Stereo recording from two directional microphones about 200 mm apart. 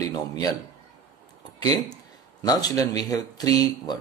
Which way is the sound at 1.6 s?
20° left (ahead or behind).